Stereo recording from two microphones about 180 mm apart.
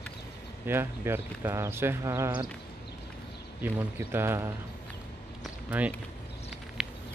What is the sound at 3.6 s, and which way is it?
Speech, 10° right (ahead or behind).